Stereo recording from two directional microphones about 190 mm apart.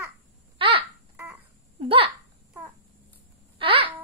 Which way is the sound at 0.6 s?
25° right (ahead or behind).